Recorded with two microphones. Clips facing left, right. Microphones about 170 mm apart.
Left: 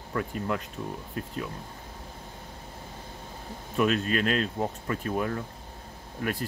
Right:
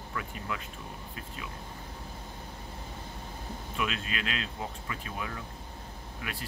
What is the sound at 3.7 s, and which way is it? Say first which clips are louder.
Speech: left 10 dB; 40° left (ahead or behind).